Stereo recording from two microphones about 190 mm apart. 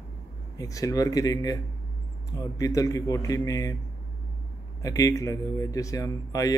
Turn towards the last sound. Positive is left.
turn(degrees=20)  # may be behind; listen again after turning